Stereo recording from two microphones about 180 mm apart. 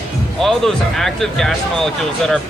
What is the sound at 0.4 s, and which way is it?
Speech, centre (ahead or behind).